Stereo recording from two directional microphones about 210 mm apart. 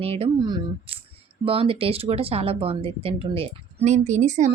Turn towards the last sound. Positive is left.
turn(degrees=-35)  # may be behind; listen again after turning